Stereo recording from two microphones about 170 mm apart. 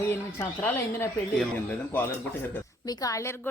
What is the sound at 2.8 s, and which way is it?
Speech, 20° left (ahead or behind).